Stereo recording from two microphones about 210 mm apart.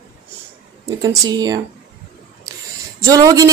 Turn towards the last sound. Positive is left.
turn(degrees=-15)  # may be behind; listen again after turning